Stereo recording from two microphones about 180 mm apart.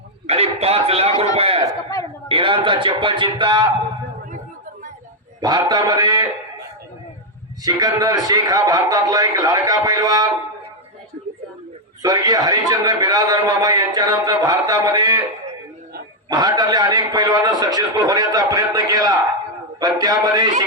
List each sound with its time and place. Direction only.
0.3 s a man's voice: 35° right (ahead or behind)
5.4 s a man's voice: 25° right (ahead or behind)
7.6 s a man's voice: 20° right (ahead or behind)
12.0 s a man's voice: 20° right (ahead or behind)
16.3 s a man's voice: 20° right (ahead or behind)